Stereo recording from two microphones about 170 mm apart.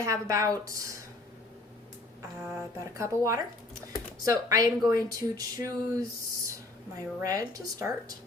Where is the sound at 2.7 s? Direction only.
20° right (ahead or behind).